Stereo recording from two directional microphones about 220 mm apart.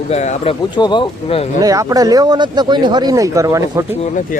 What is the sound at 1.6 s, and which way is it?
Speech, 15° right (ahead or behind).